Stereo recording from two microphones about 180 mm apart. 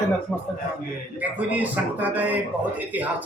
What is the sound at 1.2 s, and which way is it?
A man's voice, 10° right (ahead or behind).